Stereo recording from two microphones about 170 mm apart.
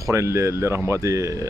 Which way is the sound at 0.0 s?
15° right (ahead or behind).